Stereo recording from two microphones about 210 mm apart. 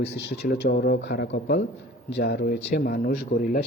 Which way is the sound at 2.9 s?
40° left (ahead or behind).